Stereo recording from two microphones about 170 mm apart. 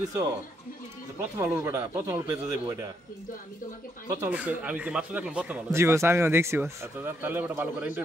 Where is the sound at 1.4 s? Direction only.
15° right (ahead or behind).